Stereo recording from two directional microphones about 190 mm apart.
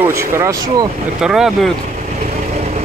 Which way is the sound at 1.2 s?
5° right (ahead or behind).